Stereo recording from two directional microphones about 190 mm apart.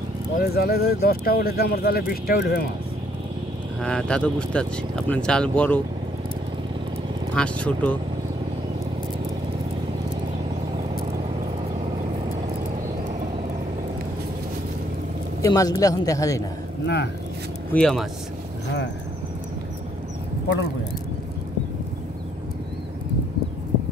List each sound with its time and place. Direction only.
0.4 s speech: 55° left (ahead or behind)
3.8 s speech: 5° left (ahead or behind)
7.3 s a man's voice: 5° left (ahead or behind)
15.4 s a man's voice: 20° left (ahead or behind)
16.8 s speech: 60° left (ahead or behind)
17.7 s speech: 5° left (ahead or behind)